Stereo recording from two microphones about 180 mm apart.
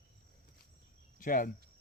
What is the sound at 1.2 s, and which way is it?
Speech, 50° left (ahead or behind).